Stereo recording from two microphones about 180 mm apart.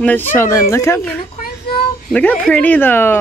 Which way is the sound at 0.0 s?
10° left (ahead or behind).